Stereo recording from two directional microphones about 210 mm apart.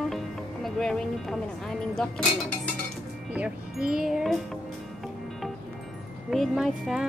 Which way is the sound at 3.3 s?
5° right (ahead or behind).